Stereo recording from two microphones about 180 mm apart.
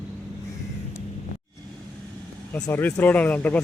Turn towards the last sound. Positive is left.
turn(degrees=10)  # may be behind; listen again after turning